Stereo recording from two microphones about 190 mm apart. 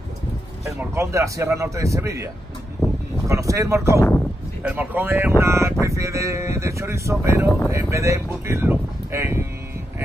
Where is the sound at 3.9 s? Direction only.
10° left (ahead or behind).